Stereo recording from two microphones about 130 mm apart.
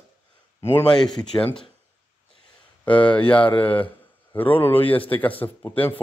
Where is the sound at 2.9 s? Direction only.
40° left (ahead or behind).